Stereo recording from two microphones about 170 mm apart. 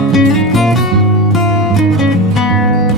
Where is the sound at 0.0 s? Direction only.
Centre (ahead or behind).